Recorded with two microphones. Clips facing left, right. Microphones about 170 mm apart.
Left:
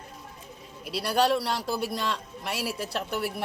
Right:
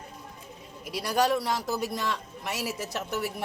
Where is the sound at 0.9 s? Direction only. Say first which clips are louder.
Left 1 dB; 70° left (ahead or behind).